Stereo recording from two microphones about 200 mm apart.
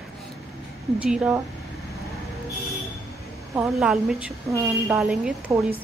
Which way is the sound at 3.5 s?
5° right (ahead or behind).